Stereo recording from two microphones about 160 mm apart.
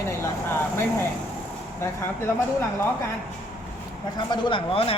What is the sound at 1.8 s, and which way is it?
Speech, 15° left (ahead or behind).